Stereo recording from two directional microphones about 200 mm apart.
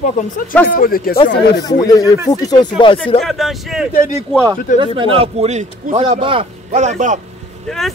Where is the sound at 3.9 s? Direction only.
35° left (ahead or behind).